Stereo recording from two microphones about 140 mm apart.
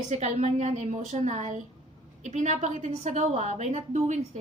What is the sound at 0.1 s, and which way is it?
A woman's voice, 55° right (ahead or behind).